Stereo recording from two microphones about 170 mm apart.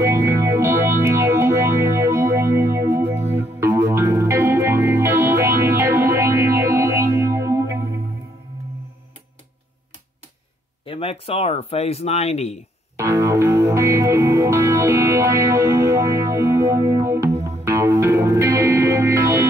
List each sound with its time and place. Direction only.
0.0 s music: 15° right (ahead or behind)
10.9 s speech: 35° left (ahead or behind)
12.9 s music: 15° right (ahead or behind)